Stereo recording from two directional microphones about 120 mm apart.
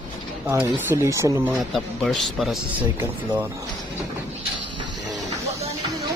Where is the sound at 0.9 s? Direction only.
25° right (ahead or behind).